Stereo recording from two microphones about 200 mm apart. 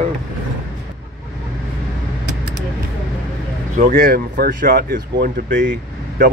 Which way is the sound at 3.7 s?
45° right (ahead or behind).